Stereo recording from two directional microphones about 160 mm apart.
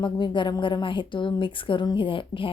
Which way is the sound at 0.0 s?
30° left (ahead or behind).